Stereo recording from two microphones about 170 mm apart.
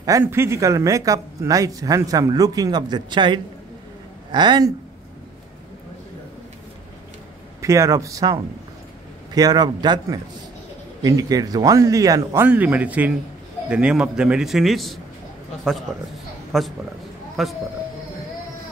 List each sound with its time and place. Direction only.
0.0 s speech: 15° right (ahead or behind)
7.6 s a man's voice: 15° right (ahead or behind); by 15.0 s centre (ahead or behind)
16.5 s a man's voice: centre (ahead or behind)